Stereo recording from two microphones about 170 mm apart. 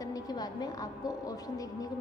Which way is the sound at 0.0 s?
20° left (ahead or behind).